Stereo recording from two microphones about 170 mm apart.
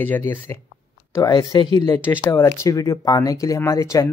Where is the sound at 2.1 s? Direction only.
15° left (ahead or behind).